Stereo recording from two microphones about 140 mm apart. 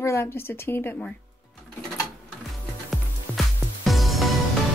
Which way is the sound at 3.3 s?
15° right (ahead or behind).